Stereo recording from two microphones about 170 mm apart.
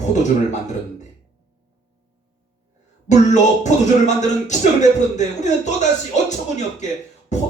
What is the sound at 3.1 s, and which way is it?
Speech, 45° left (ahead or behind).